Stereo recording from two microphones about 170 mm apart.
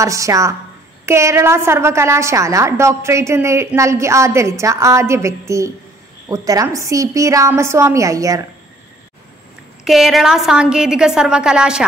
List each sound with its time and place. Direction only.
0.0 s a woman's voice: 20° right (ahead or behind)
9.8 s a woman's voice: centre (ahead or behind)